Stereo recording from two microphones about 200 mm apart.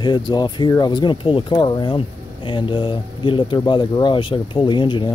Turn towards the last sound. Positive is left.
turn(degrees=25)  # may be behind; listen again after turning